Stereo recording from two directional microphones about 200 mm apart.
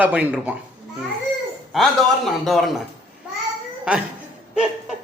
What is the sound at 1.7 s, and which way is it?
A man's voice, centre (ahead or behind).